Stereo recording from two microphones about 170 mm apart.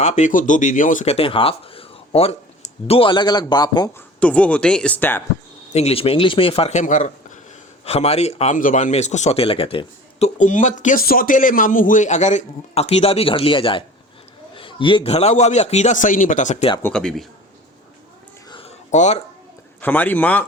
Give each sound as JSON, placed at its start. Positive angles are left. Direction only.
{"t": 0.0, "sound": "a man's voice", "side_deg": 45}
{"t": 4.2, "sound": "speech", "side_deg": 10}
{"t": 5.7, "sound": "a man's voice", "side_deg": 35}
{"t": 7.9, "sound": "a man's voice", "side_deg": 35}
{"t": 16.8, "sound": "speech", "side_deg": 5}
{"t": 18.5, "sound": "a sound", "side_deg": 40}
{"t": 19.8, "sound": "speech", "side_deg": 10}